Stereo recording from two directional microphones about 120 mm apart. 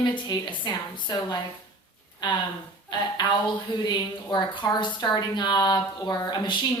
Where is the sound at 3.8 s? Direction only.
40° left (ahead or behind).